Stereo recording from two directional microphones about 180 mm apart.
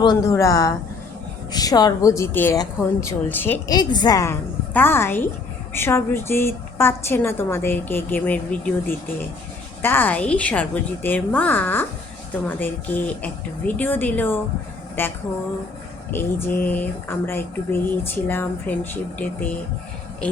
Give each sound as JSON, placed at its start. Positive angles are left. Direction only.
{"t": 0.0, "sound": "a woman's voice", "side_deg": 20}
{"t": 3.7, "sound": "a woman's voice", "side_deg": 20}
{"t": 16.1, "sound": "a woman's voice", "side_deg": 10}